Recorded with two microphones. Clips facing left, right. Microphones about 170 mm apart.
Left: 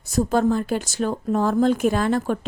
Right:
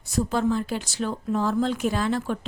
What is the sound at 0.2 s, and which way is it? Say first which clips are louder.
Speech: left 4 dB; 45° left (ahead or behind).